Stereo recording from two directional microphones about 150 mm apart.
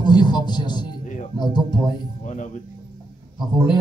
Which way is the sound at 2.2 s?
55° left (ahead or behind).